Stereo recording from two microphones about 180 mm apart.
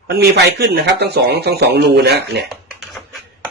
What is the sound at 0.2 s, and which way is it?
Speech, 65° right (ahead or behind).